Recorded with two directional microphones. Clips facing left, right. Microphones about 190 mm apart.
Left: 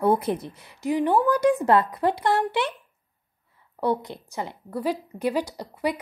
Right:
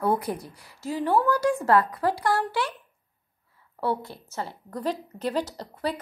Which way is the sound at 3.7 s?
20° left (ahead or behind).